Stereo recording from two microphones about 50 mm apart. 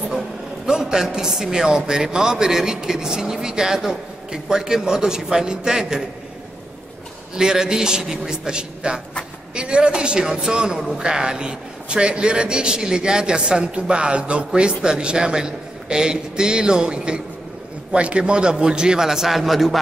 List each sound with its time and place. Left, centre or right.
0.7 s a man's voice: centre
7.3 s a man's voice: centre